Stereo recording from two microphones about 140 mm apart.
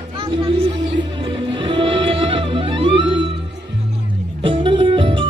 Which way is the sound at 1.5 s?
35° right (ahead or behind).